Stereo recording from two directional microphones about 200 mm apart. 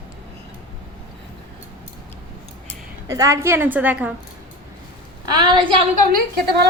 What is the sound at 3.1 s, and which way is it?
A woman's voice, 15° right (ahead or behind).